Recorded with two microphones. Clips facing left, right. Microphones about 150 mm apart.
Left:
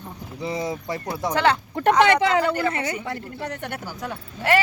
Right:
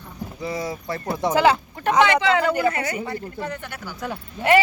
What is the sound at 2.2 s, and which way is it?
Speech, 40° left (ahead or behind).